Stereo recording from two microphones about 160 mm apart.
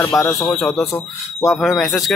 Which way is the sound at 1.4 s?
Centre (ahead or behind).